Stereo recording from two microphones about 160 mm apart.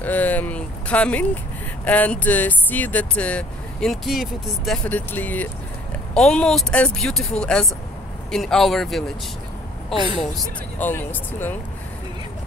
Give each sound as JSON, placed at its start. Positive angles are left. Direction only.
{"t": 0.0, "sound": "speech", "side_deg": 10}
{"t": 4.8, "sound": "speech", "side_deg": 10}
{"t": 9.9, "sound": "speech", "side_deg": -30}
{"t": 10.8, "sound": "speech", "side_deg": 10}